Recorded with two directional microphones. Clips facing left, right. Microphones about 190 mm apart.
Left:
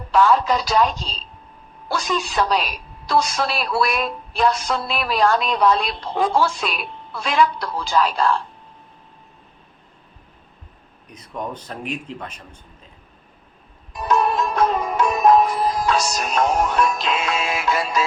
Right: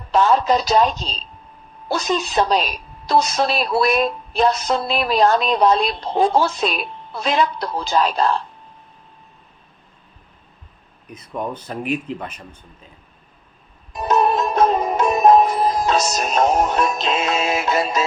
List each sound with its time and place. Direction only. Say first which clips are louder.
0.1 s a woman's voice: right 1 dB; 20° right (ahead or behind)
11.1 s speech: right 3 dB; 5° right (ahead or behind)
13.9 s sitar: right 2 dB; 25° right (ahead or behind)